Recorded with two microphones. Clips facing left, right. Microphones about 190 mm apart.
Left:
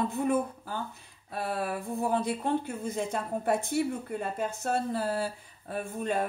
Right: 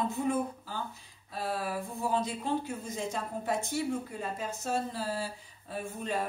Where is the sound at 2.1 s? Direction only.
55° left (ahead or behind).